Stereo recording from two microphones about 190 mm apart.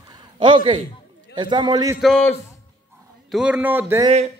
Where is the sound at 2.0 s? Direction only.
5° left (ahead or behind).